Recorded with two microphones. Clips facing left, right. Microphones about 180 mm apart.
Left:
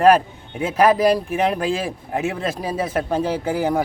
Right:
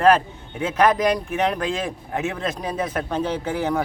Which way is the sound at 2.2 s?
30° left (ahead or behind).